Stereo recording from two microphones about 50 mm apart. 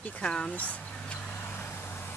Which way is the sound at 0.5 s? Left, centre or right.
Left.